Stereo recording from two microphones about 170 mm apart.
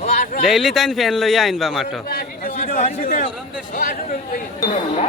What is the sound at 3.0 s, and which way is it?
Speech, 55° left (ahead or behind).